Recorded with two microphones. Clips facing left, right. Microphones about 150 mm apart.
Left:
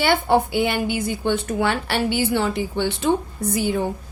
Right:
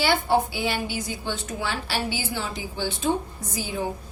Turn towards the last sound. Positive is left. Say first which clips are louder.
# left 8 dB
turn(degrees=60)  # may be behind; listen again after turning